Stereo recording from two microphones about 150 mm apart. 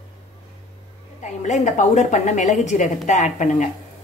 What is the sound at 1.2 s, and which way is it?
A woman's voice, 50° left (ahead or behind).